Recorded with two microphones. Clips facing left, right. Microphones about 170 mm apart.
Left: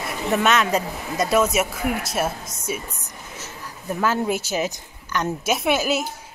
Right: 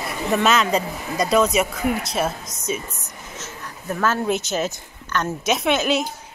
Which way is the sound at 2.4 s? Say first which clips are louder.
Even; 25° left (ahead or behind).